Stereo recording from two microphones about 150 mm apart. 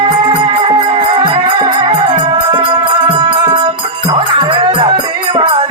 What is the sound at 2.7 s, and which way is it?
Music, 35° right (ahead or behind).